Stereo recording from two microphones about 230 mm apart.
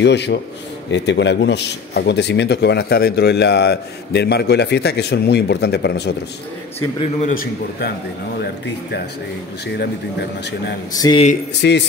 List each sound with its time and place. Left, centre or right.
0.0 s speech: left
7.0 s a man's voice: left
10.9 s speech: centre
11.6 s speech: left